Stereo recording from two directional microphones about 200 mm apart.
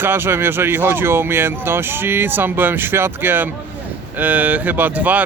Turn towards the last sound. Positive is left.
turn(degrees=-10)  # may be behind; listen again after turning